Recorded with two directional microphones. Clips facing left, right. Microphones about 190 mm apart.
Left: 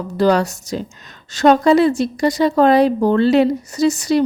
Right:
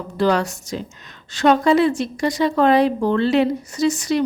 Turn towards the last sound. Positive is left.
turn(degrees=35)  # may be behind; listen again after turning